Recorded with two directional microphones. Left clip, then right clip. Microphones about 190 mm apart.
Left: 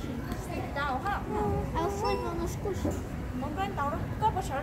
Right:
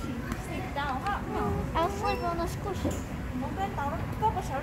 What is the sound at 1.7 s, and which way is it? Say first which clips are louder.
Speech: right 4 dB; 40° right (ahead or behind).